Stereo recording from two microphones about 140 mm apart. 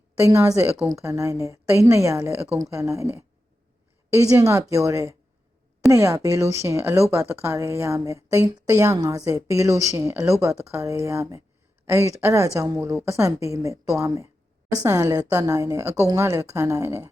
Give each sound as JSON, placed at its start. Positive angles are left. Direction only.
{"t": 0.3, "sound": "a woman's voice", "side_deg": -25}